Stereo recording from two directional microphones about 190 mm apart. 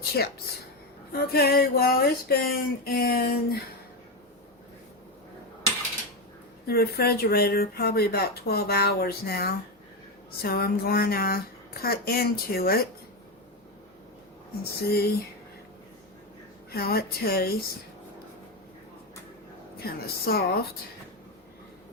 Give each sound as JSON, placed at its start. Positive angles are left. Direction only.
{"t": 1.1, "sound": "speech", "side_deg": 55}
{"t": 6.7, "sound": "speech", "side_deg": 55}
{"t": 14.6, "sound": "speech", "side_deg": 55}
{"t": 16.7, "sound": "speech", "side_deg": 55}
{"t": 19.8, "sound": "speech", "side_deg": 55}